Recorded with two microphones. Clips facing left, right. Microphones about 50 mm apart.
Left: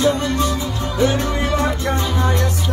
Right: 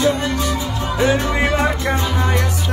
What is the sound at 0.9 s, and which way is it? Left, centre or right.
Music, right.